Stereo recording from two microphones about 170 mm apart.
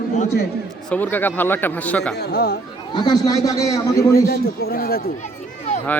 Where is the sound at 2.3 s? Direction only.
65° left (ahead or behind).